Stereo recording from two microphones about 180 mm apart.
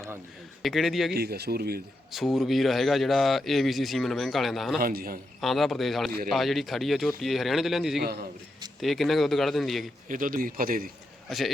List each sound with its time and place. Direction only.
0.6 s speech: centre (ahead or behind)
1.1 s speech: 60° right (ahead or behind)
2.1 s speech: centre (ahead or behind)
4.8 s speech: 55° right (ahead or behind)
5.4 s speech: centre (ahead or behind)
10.1 s a man's voice: 50° right (ahead or behind)
11.3 s speech: centre (ahead or behind)